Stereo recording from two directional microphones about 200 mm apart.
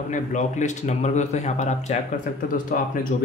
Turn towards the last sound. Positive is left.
turn(degrees=40)  # may be behind; listen again after turning